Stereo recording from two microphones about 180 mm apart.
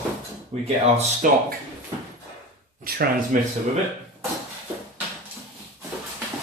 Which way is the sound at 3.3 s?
45° right (ahead or behind).